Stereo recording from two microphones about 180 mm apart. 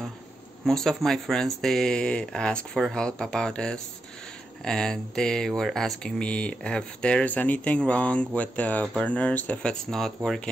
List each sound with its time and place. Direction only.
0.7 s speech: 5° left (ahead or behind)